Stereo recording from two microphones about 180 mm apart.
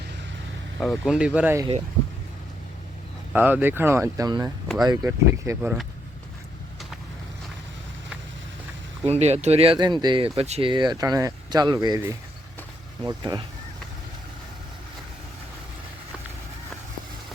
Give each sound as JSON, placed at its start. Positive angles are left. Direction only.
{"t": 0.8, "sound": "speech", "side_deg": 0}
{"t": 3.3, "sound": "speech", "side_deg": -10}
{"t": 9.0, "sound": "speech", "side_deg": -35}
{"t": 13.0, "sound": "speech", "side_deg": -20}